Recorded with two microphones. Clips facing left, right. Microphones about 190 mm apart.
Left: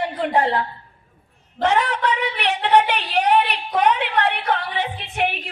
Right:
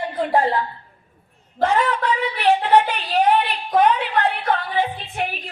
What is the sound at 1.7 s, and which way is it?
A woman's voice, 70° left (ahead or behind).